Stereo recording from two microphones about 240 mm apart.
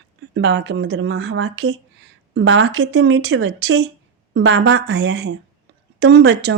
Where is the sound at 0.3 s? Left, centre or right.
Right.